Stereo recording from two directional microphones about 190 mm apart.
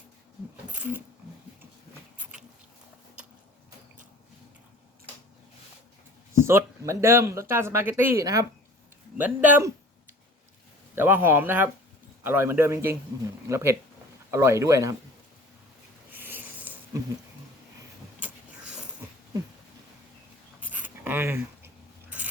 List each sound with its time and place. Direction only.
0.8 s speech: 10° right (ahead or behind)
6.4 s speech: 15° right (ahead or behind)
10.9 s speech: 10° right (ahead or behind)
16.1 s a sound: 10° right (ahead or behind)
18.2 s vehicle: 5° right (ahead or behind)
20.6 s writing: 10° right (ahead or behind)